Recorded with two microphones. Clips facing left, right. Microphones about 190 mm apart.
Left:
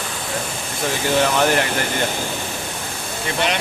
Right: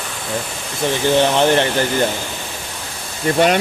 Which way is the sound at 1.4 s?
30° right (ahead or behind).